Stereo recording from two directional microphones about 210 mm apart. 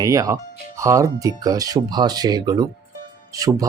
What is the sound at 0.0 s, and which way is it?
Speech, 15° right (ahead or behind).